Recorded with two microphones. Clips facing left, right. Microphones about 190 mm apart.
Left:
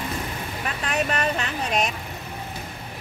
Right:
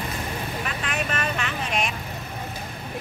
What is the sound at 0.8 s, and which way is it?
Vehicle, 40° left (ahead or behind).